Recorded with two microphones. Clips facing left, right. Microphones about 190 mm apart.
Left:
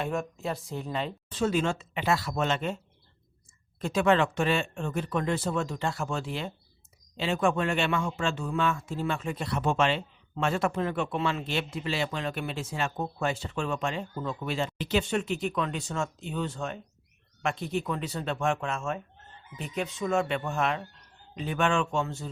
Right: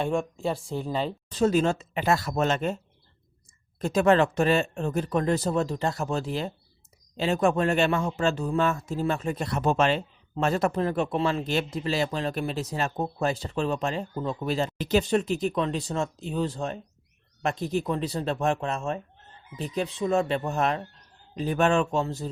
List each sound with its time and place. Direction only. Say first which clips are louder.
0.0 s speech: right 5 dB; 30° right (ahead or behind)
3.8 s speech: right 3 dB; 40° right (ahead or behind)